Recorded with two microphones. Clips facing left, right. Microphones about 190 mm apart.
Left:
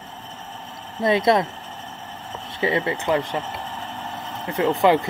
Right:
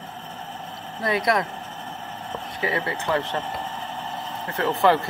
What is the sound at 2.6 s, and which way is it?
Speech, 20° left (ahead or behind).